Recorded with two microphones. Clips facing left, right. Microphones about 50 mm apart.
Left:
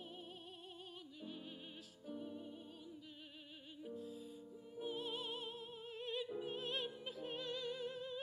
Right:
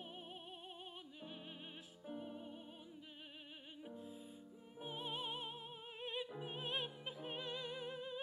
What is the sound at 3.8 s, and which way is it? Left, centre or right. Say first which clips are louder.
Music: left 4 dB; right.